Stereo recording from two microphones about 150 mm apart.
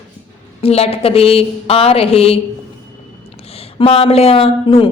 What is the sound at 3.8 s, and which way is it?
A woman's voice, 40° left (ahead or behind).